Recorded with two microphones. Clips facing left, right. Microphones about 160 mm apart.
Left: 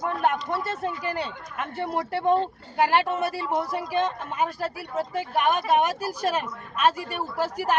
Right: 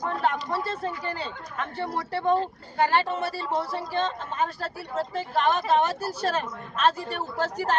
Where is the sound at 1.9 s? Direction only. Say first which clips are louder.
Left 2 dB; 15° left (ahead or behind).